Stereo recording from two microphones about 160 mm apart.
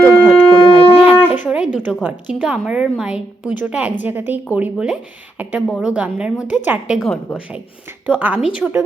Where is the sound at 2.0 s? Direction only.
10° right (ahead or behind).